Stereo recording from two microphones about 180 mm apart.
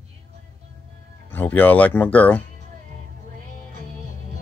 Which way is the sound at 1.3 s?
10° left (ahead or behind).